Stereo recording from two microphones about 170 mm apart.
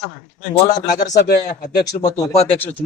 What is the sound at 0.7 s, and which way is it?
Speech, 60° left (ahead or behind).